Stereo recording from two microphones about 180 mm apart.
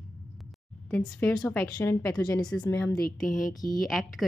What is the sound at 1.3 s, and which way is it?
Speech, 15° left (ahead or behind).